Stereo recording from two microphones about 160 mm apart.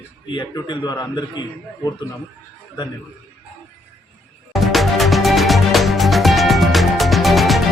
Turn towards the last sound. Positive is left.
turn(degrees=0)  # may be behind; listen again after turning